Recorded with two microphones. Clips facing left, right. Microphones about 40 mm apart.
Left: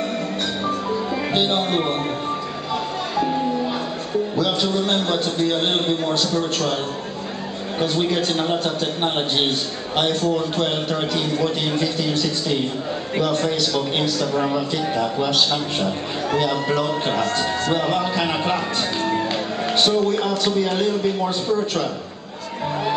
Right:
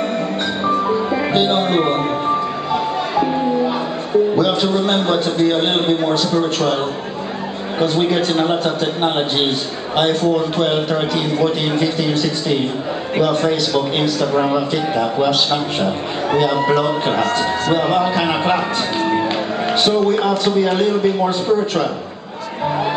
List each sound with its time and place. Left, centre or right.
0.7 s music: right
4.4 s speech: centre
7.8 s speech: centre